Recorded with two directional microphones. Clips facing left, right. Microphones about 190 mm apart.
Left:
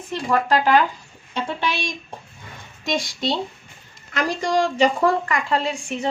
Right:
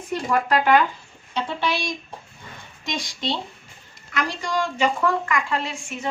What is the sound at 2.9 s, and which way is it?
A woman's voice, 50° left (ahead or behind).